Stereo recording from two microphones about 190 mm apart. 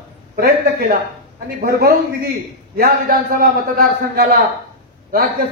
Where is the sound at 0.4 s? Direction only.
50° right (ahead or behind).